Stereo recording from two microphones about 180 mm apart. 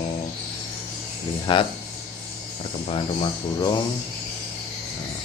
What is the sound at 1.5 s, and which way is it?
Speech, 25° left (ahead or behind).